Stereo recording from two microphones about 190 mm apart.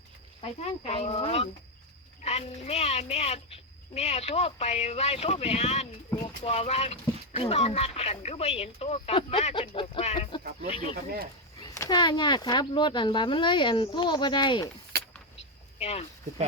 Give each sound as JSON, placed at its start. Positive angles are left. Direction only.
{"t": 0.4, "sound": "speech", "side_deg": 30}
{"t": 10.9, "sound": "speech", "side_deg": -55}
{"t": 11.6, "sound": "speech", "side_deg": 20}
{"t": 15.8, "sound": "speech", "side_deg": 35}